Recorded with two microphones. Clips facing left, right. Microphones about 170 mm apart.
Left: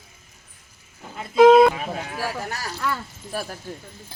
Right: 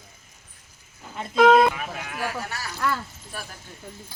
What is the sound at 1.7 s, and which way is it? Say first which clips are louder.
Speech: left 3 dB; 30° left (ahead or behind).